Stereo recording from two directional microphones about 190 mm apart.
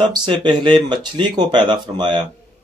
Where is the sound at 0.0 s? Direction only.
25° right (ahead or behind).